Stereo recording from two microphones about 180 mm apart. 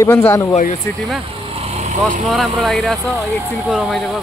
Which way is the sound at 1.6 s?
35° right (ahead or behind).